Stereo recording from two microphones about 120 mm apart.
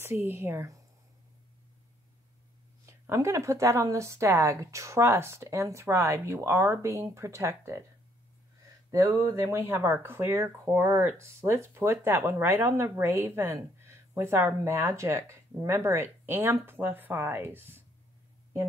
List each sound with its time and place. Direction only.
0.0 s speech: 20° right (ahead or behind)
2.9 s speech: 25° right (ahead or behind)
8.9 s speech: 25° right (ahead or behind)